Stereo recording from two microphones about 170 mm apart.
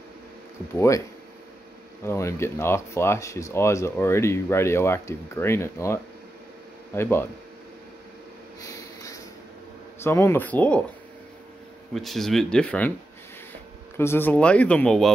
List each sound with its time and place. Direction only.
0.7 s speech: 15° left (ahead or behind)
2.0 s speech: 15° left (ahead or behind)
8.6 s snort: 20° left (ahead or behind)
10.0 s speech: 15° left (ahead or behind)
11.9 s speech: centre (ahead or behind)
13.9 s speech: 15° left (ahead or behind)